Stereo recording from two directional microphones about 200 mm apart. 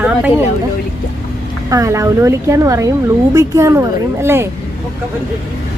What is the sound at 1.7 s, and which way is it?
A woman's voice, 15° right (ahead or behind).